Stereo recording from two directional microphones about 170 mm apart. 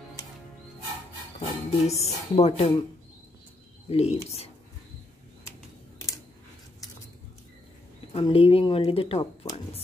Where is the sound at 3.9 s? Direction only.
40° left (ahead or behind).